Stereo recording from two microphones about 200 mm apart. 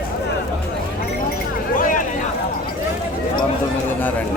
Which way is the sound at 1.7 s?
40° left (ahead or behind).